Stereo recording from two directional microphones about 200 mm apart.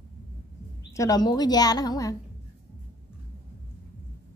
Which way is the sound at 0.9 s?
20° left (ahead or behind).